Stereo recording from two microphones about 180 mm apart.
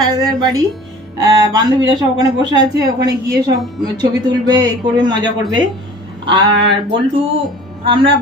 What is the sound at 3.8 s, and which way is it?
Speech, 25° right (ahead or behind).